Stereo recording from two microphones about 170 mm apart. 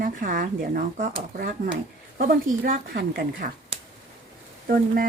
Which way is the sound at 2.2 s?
55° right (ahead or behind).